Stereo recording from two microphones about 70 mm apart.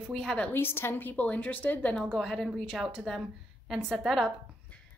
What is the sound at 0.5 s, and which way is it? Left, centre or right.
A woman's voice, left.